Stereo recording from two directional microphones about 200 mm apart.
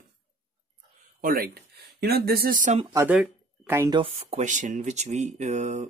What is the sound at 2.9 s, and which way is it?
Speech, 10° right (ahead or behind).